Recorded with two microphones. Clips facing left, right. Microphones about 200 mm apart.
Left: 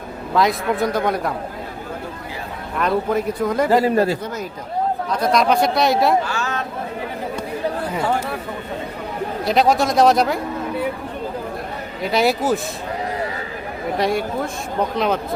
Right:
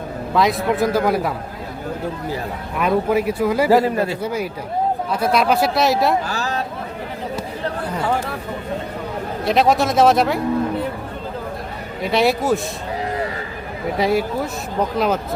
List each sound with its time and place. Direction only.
0.3 s speech: centre (ahead or behind)
2.7 s speech: 5° right (ahead or behind)
6.2 s a sound: 35° right (ahead or behind)
9.4 s speech: centre (ahead or behind)
12.0 s speech: centre (ahead or behind)
14.0 s speech: 5° right (ahead or behind)